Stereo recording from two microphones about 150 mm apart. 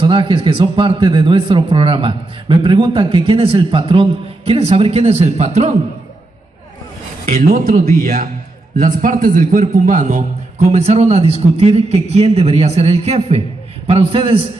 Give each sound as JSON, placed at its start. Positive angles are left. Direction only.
{"t": 0.0, "sound": "speech", "side_deg": -35}
{"t": 7.2, "sound": "a man's voice", "side_deg": -80}
{"t": 10.7, "sound": "a man's voice", "side_deg": -45}